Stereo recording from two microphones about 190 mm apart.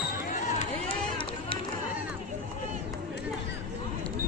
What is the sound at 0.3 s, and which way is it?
Crowd, 40° left (ahead or behind).